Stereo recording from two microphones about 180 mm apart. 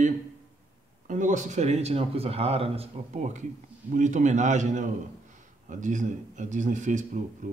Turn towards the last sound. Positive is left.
turn(degrees=-45)  # may be behind; listen again after turning